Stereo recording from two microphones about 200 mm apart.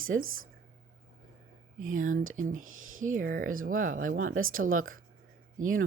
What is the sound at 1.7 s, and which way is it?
Speech, 40° right (ahead or behind).